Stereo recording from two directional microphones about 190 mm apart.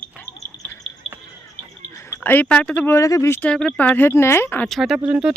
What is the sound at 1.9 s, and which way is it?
Speech, 10° left (ahead or behind).